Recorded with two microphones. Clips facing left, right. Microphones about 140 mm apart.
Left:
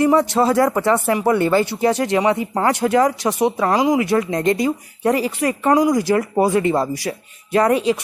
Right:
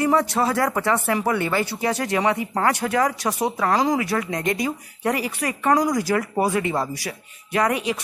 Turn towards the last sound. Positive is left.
turn(degrees=30)  # may be behind; listen again after turning